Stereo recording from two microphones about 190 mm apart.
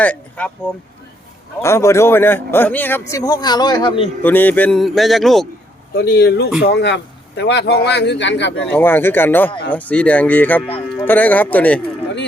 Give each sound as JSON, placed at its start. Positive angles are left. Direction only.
{"t": 0.0, "sound": "speech", "side_deg": 5}
{"t": 1.6, "sound": "speech", "side_deg": 15}
{"t": 4.2, "sound": "a man's voice", "side_deg": 10}
{"t": 6.0, "sound": "speech", "side_deg": 55}
{"t": 8.6, "sound": "speech", "side_deg": 10}